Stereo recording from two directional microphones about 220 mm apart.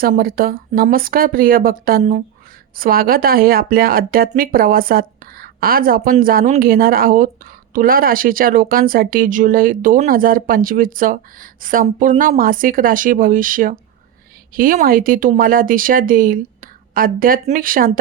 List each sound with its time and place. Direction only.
0.0 s speech: 40° right (ahead or behind)